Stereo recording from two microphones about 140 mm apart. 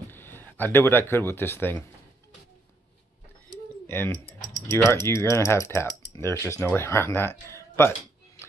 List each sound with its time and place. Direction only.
0.1 s speech: 15° left (ahead or behind)
3.9 s speech: 15° left (ahead or behind)